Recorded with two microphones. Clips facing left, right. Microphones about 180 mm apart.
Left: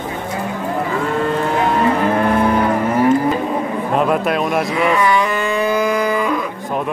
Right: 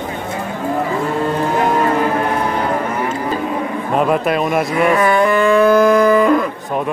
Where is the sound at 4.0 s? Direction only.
Centre (ahead or behind).